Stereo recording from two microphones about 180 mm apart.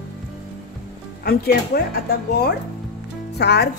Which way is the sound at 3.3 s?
65° left (ahead or behind).